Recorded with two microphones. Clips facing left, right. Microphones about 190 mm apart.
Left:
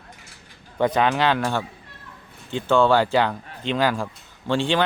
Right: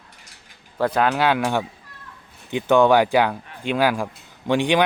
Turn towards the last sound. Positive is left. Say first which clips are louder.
# right 3 dB
turn(degrees=-15)  # may be behind; listen again after turning